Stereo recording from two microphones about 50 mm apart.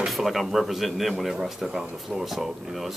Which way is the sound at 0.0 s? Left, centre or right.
Centre.